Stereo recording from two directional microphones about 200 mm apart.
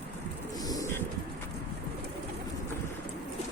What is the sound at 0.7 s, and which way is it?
Bird, 15° left (ahead or behind).